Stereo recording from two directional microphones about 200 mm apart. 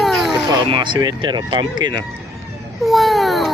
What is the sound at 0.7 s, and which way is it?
Speech, 25° right (ahead or behind).